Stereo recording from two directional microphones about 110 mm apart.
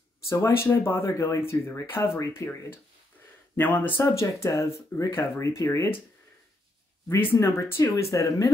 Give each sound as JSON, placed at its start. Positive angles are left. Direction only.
{"t": 0.3, "sound": "speech", "side_deg": 25}
{"t": 7.1, "sound": "speech", "side_deg": 20}